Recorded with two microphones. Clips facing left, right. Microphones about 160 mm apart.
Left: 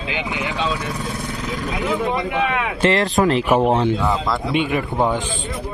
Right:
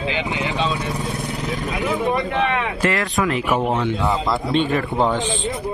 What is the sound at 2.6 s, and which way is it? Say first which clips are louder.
Speech: left 3 dB; 25° left (ahead or behind).